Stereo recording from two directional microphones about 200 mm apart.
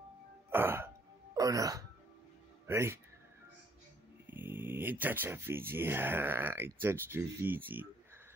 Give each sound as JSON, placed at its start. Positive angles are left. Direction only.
{"t": 0.5, "sound": "throat clearing", "side_deg": -10}
{"t": 2.6, "sound": "speech", "side_deg": -15}
{"t": 4.3, "sound": "speech", "side_deg": -10}